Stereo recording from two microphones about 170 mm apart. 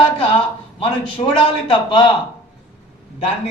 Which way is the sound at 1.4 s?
30° left (ahead or behind).